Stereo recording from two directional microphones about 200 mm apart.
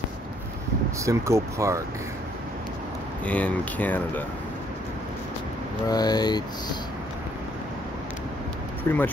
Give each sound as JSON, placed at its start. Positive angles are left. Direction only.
{"t": 1.0, "sound": "speech", "side_deg": -15}
{"t": 3.3, "sound": "speech", "side_deg": 5}
{"t": 5.9, "sound": "speech", "side_deg": 20}
{"t": 8.9, "sound": "speech", "side_deg": 15}